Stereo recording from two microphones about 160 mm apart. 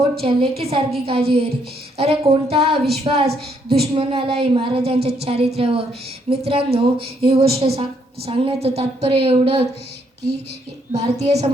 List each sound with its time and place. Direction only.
0.2 s a woman's voice: 40° right (ahead or behind)
10.9 s a woman's voice: 40° right (ahead or behind)